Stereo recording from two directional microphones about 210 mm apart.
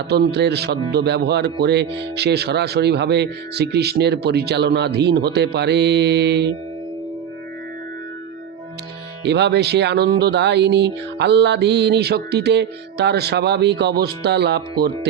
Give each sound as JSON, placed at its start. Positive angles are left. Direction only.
{"t": 0.1, "sound": "speech", "side_deg": -50}
{"t": 9.2, "sound": "speech", "side_deg": -55}